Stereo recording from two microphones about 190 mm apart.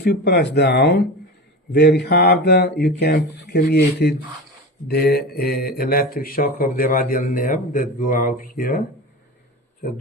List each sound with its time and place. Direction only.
0.0 s speech: 60° left (ahead or behind)